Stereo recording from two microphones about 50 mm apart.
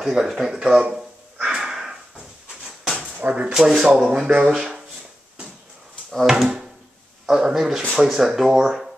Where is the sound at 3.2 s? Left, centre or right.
Right.